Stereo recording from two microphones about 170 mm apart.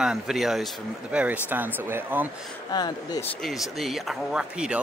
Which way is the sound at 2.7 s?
25° left (ahead or behind).